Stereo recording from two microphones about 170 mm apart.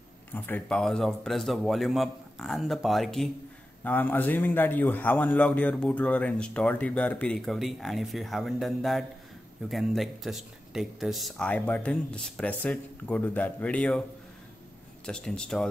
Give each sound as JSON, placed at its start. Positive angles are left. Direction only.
{"t": 0.3, "sound": "a man's voice", "side_deg": 10}
{"t": 15.0, "sound": "speech", "side_deg": 5}